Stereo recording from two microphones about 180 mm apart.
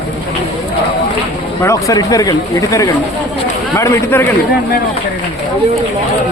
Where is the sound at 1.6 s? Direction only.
15° left (ahead or behind).